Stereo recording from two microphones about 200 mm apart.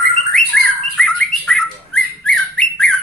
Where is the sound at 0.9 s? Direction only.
5° left (ahead or behind).